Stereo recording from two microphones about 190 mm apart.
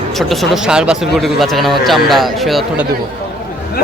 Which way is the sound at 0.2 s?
Centre (ahead or behind).